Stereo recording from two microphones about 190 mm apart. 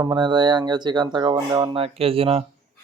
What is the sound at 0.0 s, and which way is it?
Speech, 25° right (ahead or behind).